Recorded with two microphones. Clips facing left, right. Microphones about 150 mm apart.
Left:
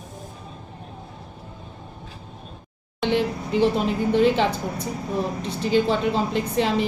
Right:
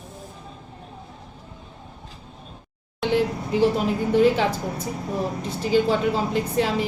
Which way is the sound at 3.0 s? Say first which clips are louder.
Even; 5° right (ahead or behind).